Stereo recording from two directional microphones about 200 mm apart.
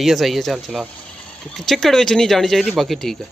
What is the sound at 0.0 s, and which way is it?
Speech, centre (ahead or behind).